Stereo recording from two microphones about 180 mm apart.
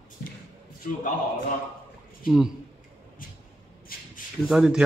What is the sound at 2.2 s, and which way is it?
Speech, 5° right (ahead or behind).